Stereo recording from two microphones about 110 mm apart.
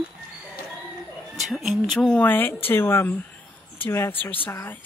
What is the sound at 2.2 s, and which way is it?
Speech, 20° left (ahead or behind).